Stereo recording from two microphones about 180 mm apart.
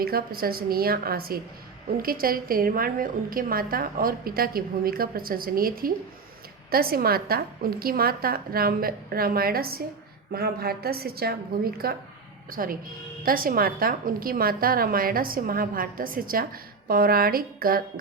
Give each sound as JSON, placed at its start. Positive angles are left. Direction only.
{"t": 0.0, "sound": "a woman's voice", "side_deg": -55}